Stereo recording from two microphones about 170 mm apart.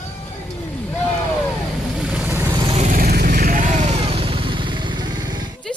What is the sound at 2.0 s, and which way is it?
Vehicle, centre (ahead or behind).